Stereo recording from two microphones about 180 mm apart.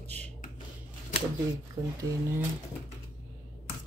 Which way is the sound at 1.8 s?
20° right (ahead or behind).